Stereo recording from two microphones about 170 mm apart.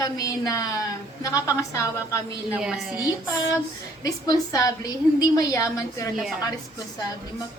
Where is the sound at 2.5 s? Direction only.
5° right (ahead or behind).